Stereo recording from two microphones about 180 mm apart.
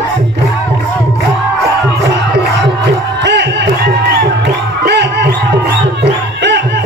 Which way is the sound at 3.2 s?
75° right (ahead or behind).